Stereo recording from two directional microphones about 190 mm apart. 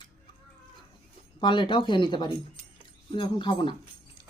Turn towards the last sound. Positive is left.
turn(degrees=25)  # may be behind; listen again after turning